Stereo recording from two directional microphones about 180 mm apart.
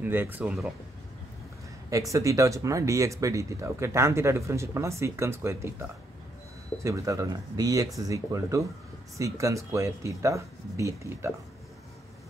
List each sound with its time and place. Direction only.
0.0 s speech: 10° right (ahead or behind)
1.9 s speech: 20° right (ahead or behind)